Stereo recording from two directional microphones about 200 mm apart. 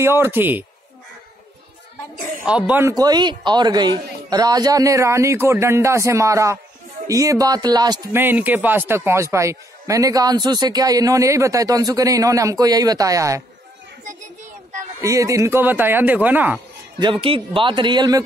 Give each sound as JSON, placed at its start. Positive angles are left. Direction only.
{"t": 0.0, "sound": "speech", "side_deg": -10}
{"t": 2.4, "sound": "speech", "side_deg": -5}
{"t": 2.9, "sound": "speech", "side_deg": -20}
{"t": 15.0, "sound": "speech", "side_deg": -15}
{"t": 17.0, "sound": "a man's voice", "side_deg": -25}